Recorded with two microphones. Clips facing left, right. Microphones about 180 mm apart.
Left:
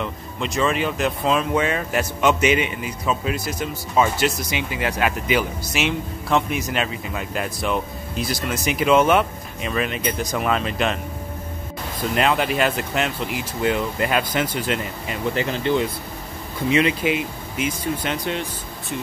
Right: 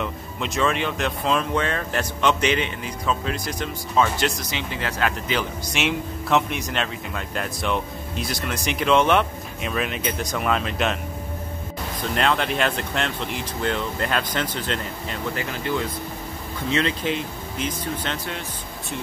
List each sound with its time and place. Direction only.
0.0 s speech: centre (ahead or behind)
12.2 s speech: 5° left (ahead or behind)
15.3 s speech: 25° left (ahead or behind)
16.6 s speech: 10° left (ahead or behind)